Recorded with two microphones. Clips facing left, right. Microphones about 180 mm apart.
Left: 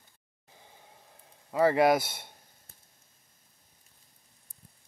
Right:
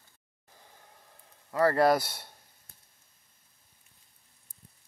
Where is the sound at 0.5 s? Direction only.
15° left (ahead or behind).